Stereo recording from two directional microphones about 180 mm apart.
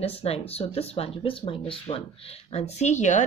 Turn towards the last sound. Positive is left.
turn(degrees=40)  # may be behind; listen again after turning